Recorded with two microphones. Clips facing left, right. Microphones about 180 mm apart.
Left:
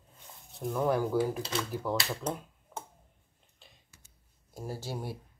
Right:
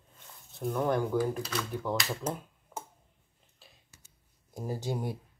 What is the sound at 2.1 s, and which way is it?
Finger snapping, 5° right (ahead or behind).